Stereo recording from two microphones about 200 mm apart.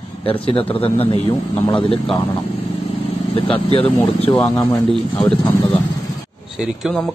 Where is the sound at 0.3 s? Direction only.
30° left (ahead or behind).